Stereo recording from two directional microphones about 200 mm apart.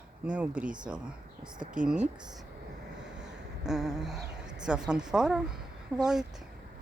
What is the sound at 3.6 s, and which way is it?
Speech, 5° right (ahead or behind).